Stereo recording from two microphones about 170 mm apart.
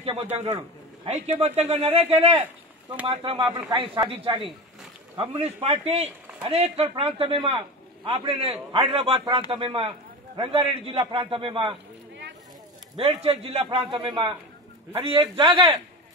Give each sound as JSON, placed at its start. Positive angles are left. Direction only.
{"t": 1.0, "sound": "a man's voice", "side_deg": -40}
{"t": 12.9, "sound": "a man's voice", "side_deg": -30}